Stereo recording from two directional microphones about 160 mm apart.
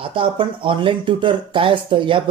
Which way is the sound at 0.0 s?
35° right (ahead or behind).